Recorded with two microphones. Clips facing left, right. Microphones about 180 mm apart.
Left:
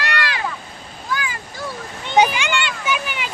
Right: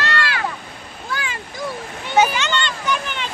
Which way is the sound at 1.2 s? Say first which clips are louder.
Even; 25° right (ahead or behind).